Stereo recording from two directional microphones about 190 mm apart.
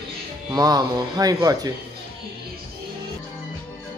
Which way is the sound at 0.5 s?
20° right (ahead or behind).